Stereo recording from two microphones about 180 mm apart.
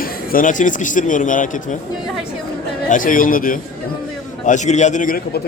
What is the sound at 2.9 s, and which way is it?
A man's voice, 50° left (ahead or behind).